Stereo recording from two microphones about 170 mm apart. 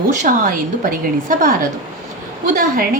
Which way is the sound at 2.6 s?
55° right (ahead or behind).